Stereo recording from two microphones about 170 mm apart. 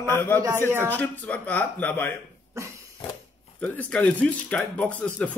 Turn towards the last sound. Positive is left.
turn(degrees=10)  # may be behind; listen again after turning